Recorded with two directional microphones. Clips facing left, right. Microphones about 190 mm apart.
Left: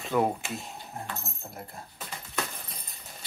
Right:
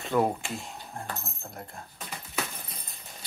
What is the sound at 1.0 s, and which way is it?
Speech, 5° left (ahead or behind).